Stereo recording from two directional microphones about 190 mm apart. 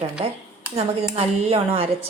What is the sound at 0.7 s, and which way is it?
Speech, 30° right (ahead or behind).